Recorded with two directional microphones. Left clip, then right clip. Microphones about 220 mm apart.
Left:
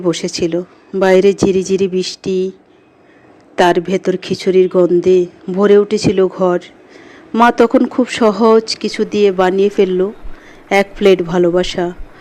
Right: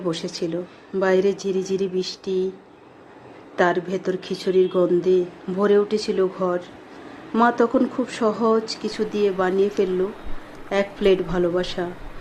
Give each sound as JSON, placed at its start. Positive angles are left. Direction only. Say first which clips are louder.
{"t": 0.0, "sound": "speech", "louder": "left 10 dB", "side_deg": 35}
{"t": 3.5, "sound": "speech", "louder": "left 9 dB", "side_deg": 35}